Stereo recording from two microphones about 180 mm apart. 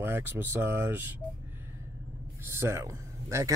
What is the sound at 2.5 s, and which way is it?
Speech, 15° right (ahead or behind).